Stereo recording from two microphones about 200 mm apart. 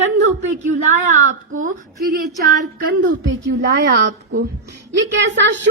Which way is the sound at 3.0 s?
70° right (ahead or behind).